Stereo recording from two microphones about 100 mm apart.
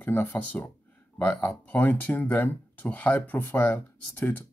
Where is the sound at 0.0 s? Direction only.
20° left (ahead or behind).